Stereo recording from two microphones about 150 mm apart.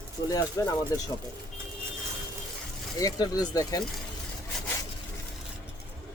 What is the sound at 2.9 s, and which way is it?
Speech, 25° left (ahead or behind).